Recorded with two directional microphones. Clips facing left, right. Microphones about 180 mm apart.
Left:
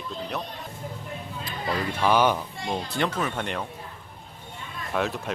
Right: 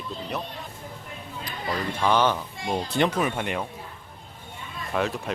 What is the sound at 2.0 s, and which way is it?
Speech, 10° left (ahead or behind).